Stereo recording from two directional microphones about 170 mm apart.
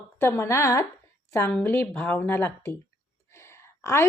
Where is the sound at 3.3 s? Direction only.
15° left (ahead or behind).